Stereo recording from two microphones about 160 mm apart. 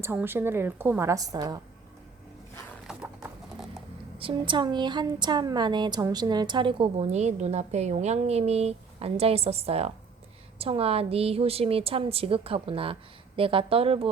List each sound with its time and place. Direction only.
0.0 s a woman's voice: 15° right (ahead or behind)
2.8 s a sound: 5° right (ahead or behind)
4.2 s a woman's voice: 30° right (ahead or behind)